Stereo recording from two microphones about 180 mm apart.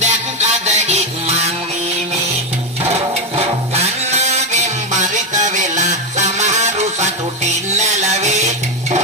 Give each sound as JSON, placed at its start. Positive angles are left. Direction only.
{"t": 0.0, "sound": "music", "side_deg": -40}
{"t": 2.9, "sound": "music", "side_deg": -35}